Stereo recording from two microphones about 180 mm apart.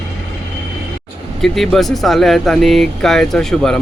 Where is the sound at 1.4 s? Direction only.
Centre (ahead or behind).